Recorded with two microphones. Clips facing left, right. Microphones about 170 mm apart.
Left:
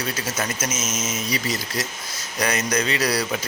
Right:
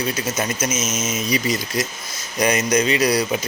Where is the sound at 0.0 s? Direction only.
20° right (ahead or behind).